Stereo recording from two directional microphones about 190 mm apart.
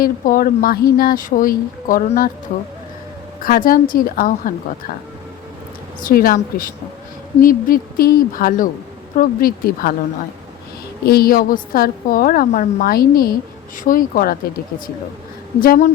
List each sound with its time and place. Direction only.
0.0 s a woman's voice: 50° left (ahead or behind)
3.4 s a woman's voice: 50° left (ahead or behind)
6.0 s a woman's voice: 50° left (ahead or behind)
11.0 s a woman's voice: 55° left (ahead or behind)
15.6 s a woman's voice: 50° left (ahead or behind)